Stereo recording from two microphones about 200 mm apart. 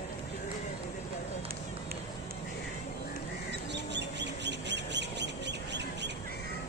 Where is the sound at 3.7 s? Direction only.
60° right (ahead or behind).